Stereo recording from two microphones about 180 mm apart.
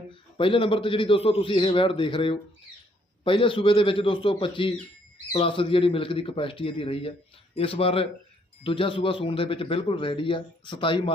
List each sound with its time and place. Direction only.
0.3 s a man's voice: 30° left (ahead or behind)